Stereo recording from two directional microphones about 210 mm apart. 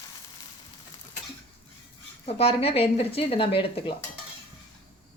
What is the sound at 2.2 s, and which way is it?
A woman's voice, 30° left (ahead or behind).